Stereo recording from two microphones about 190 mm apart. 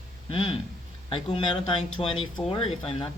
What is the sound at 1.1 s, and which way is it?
Speech, 25° left (ahead or behind).